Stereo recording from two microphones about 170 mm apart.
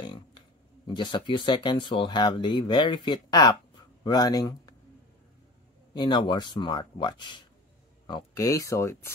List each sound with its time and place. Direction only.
0.0 s a sound: 25° left (ahead or behind)
0.8 s speech: 25° left (ahead or behind)
5.9 s speech: 25° left (ahead or behind)